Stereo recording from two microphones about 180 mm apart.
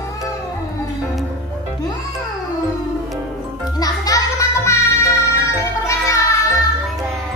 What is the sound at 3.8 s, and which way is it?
Music, 20° left (ahead or behind).